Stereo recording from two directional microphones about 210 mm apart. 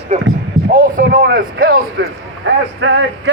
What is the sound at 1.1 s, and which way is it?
A man's voice, 50° right (ahead or behind).